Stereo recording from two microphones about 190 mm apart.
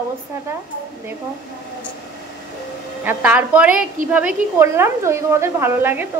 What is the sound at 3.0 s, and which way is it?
A woman's voice, 10° right (ahead or behind).